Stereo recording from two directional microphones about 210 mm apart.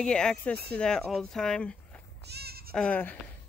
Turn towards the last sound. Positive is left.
turn(degrees=5)  # may be behind; listen again after turning